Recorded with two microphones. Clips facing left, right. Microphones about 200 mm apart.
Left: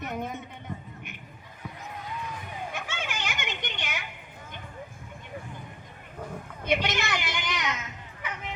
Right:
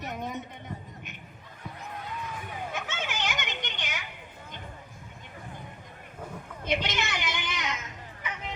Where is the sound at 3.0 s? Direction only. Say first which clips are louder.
Right 2 dB; 55° left (ahead or behind).